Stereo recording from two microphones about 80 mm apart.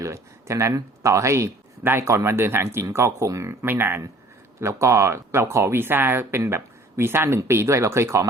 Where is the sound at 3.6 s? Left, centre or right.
Right.